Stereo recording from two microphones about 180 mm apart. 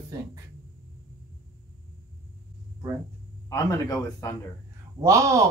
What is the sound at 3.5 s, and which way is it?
Speech, 20° left (ahead or behind).